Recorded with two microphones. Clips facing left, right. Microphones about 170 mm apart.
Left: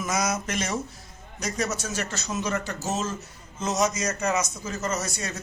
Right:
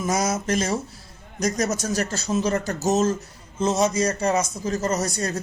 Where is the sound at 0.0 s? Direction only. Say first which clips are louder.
Right 4 dB; 30° right (ahead or behind).